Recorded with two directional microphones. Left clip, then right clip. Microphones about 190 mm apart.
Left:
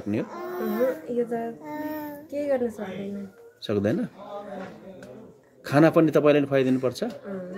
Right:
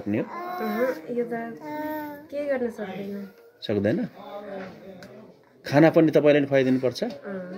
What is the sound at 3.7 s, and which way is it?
Speech, 5° left (ahead or behind).